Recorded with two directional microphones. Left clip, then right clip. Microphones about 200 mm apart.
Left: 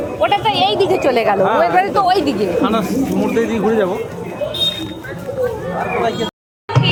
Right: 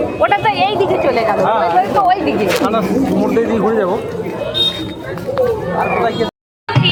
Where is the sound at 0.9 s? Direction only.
50° left (ahead or behind).